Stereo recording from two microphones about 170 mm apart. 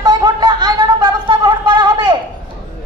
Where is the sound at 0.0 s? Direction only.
25° right (ahead or behind).